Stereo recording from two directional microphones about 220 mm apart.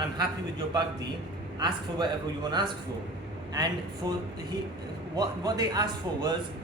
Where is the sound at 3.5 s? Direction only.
15° right (ahead or behind).